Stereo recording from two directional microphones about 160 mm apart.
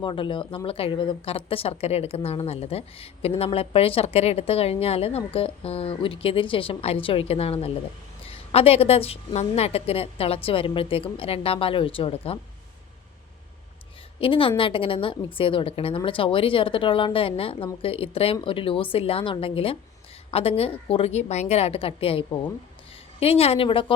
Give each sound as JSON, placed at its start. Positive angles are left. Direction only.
{"t": 0.0, "sound": "a woman's voice", "side_deg": 30}
{"t": 14.2, "sound": "a woman's voice", "side_deg": 35}